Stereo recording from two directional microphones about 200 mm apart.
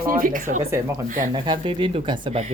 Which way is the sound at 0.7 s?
15° right (ahead or behind).